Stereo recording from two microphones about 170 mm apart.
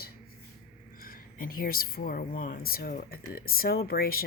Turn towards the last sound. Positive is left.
turn(degrees=60)  # may be behind; listen again after turning